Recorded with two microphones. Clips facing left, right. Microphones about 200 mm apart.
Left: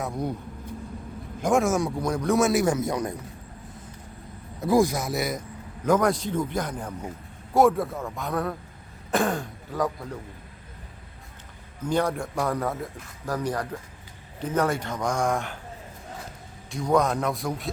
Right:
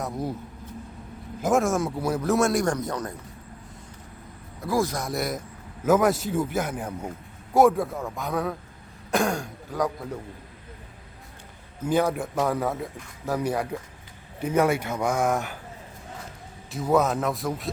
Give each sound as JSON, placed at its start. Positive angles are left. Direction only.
{"t": 0.0, "sound": "a man's voice", "side_deg": 0}
{"t": 1.4, "sound": "a man's voice", "side_deg": 0}
{"t": 4.6, "sound": "speech", "side_deg": 15}
{"t": 4.9, "sound": "a man's voice", "side_deg": 0}
{"t": 11.8, "sound": "a man's voice", "side_deg": -5}
{"t": 16.7, "sound": "a man's voice", "side_deg": -5}